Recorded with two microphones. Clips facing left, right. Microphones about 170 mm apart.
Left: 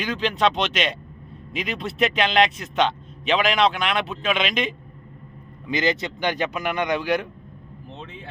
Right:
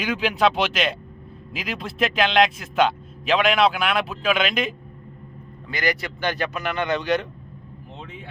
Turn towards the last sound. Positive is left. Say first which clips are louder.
# even
turn(degrees=10)  # may be behind; listen again after turning